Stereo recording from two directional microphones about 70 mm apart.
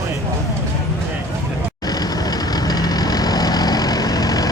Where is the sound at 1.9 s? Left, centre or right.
Left.